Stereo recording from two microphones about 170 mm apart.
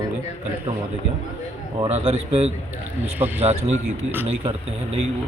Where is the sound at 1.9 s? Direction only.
40° right (ahead or behind).